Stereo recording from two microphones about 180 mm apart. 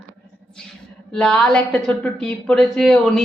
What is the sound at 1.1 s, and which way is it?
A woman's voice, 5° left (ahead or behind).